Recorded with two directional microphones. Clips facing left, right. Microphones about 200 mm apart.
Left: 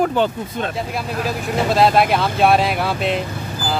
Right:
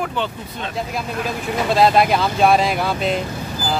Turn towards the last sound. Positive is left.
turn(degrees=0)  # may be behind; listen again after turning